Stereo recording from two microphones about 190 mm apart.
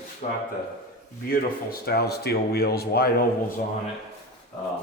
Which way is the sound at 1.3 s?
55° left (ahead or behind).